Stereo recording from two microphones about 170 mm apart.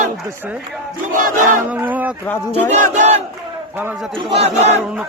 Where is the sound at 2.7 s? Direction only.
45° right (ahead or behind).